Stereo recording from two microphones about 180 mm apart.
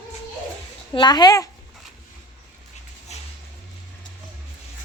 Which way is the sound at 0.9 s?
25° left (ahead or behind).